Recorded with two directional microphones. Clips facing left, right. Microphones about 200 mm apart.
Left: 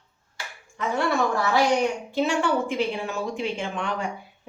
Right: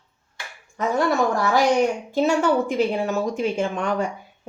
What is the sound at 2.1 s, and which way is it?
Speech, 40° right (ahead or behind).